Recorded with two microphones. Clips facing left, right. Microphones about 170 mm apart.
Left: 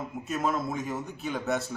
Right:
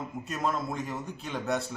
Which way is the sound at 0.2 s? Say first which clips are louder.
Left 2 dB; centre (ahead or behind).